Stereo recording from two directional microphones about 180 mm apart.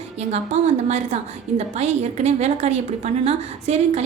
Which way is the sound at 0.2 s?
40° right (ahead or behind).